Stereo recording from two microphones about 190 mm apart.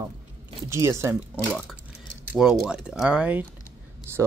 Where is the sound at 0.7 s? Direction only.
15° right (ahead or behind).